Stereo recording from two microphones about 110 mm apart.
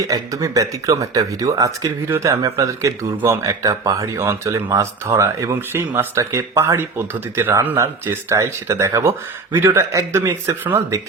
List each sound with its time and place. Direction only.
0.1 s speech: 30° right (ahead or behind)